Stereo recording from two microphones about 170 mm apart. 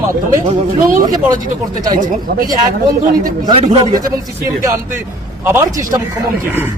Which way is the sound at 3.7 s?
20° right (ahead or behind).